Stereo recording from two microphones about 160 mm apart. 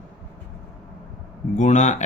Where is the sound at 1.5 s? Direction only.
50° left (ahead or behind).